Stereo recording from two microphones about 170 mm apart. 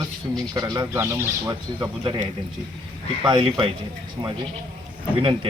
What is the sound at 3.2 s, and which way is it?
Speech, 30° right (ahead or behind).